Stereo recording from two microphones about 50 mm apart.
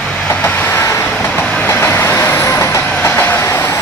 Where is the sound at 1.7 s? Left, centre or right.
Left.